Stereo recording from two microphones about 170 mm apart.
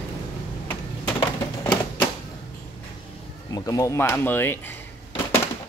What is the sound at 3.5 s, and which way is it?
Speech, 20° left (ahead or behind).